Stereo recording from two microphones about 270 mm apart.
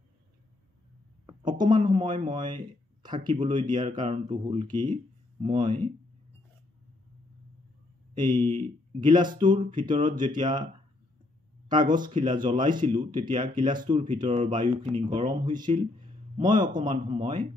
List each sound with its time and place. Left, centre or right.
1.2 s speech: centre
8.1 s speech: centre
9.9 s speech: right
10.3 s speech: centre
11.7 s speech: centre
15.7 s a sound: right
16.8 s speech: right